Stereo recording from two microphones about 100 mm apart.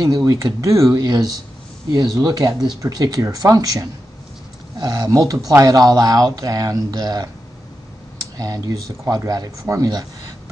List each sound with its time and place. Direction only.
0.0 s speech: 35° right (ahead or behind)
8.4 s speech: 35° right (ahead or behind)